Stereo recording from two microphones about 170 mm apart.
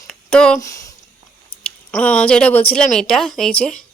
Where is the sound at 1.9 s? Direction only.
5° left (ahead or behind).